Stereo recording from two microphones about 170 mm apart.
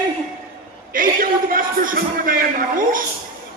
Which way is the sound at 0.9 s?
55° right (ahead or behind).